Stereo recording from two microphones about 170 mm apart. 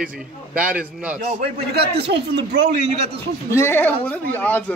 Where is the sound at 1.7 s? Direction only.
75° right (ahead or behind).